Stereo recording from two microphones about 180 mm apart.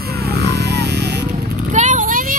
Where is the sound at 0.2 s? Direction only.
65° right (ahead or behind).